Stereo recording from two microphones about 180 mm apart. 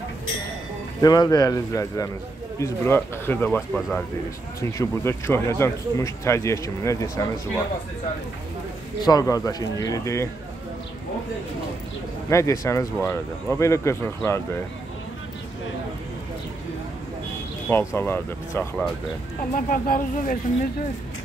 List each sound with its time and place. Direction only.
1.0 s speech: 20° left (ahead or behind)
9.0 s speech: 20° left (ahead or behind)
12.3 s speech: 15° left (ahead or behind)
17.6 s speech: 10° left (ahead or behind)
19.5 s speech: 50° left (ahead or behind)